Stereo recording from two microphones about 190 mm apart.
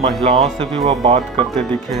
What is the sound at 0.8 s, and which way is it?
Speech, 30° right (ahead or behind).